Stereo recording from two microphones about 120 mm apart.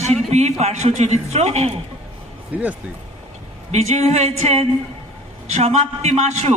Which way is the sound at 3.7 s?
70° right (ahead or behind).